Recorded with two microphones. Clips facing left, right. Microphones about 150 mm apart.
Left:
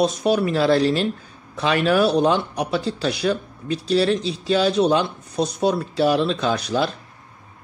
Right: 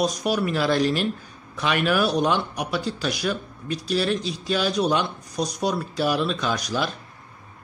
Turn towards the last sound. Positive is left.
turn(degrees=30)  # may be behind; listen again after turning